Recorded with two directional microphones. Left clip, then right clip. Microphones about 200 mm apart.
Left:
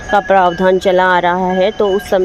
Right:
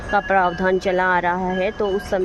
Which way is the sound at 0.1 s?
30° left (ahead or behind).